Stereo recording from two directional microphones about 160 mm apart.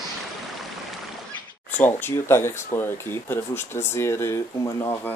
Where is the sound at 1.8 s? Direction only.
15° left (ahead or behind).